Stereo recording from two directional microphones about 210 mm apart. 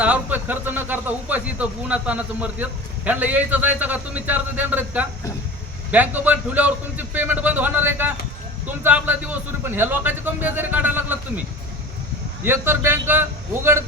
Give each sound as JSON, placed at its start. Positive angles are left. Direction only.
{"t": 0.0, "sound": "speech", "side_deg": -5}
{"t": 12.5, "sound": "speech", "side_deg": -10}